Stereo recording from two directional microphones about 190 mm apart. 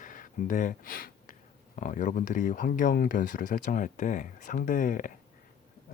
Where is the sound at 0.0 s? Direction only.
45° left (ahead or behind).